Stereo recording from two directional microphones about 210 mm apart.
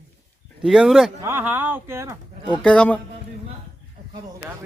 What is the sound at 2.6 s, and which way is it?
Speech, 5° left (ahead or behind).